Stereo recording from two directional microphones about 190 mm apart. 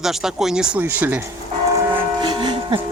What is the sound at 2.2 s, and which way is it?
Church bell, 25° right (ahead or behind).